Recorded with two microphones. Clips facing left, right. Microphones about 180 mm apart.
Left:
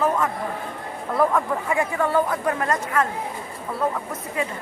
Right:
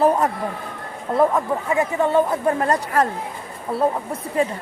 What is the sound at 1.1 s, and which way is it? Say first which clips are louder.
Speech: right 3 dB; 20° right (ahead or behind).